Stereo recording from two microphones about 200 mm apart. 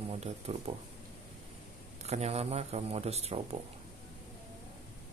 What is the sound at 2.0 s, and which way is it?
Speech, 30° right (ahead or behind).